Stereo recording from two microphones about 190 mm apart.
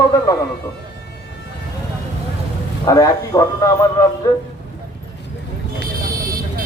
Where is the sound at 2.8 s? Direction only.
20° left (ahead or behind).